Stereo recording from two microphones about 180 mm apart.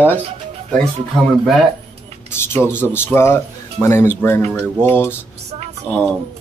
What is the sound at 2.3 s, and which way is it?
Speech, 15° left (ahead or behind).